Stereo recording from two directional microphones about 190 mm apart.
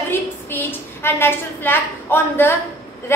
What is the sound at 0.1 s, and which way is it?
A woman's voice, 10° left (ahead or behind).